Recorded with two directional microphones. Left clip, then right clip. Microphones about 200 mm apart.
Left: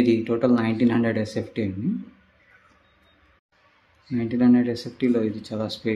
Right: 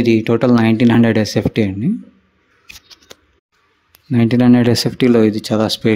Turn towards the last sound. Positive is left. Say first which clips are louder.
# right 12 dB
turn(degrees=-50)  # may be behind; listen again after turning